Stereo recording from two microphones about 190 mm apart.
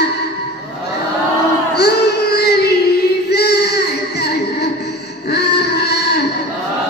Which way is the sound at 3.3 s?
60° left (ahead or behind).